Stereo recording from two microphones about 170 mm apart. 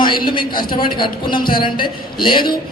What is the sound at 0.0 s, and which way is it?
A man's voice, 30° left (ahead or behind).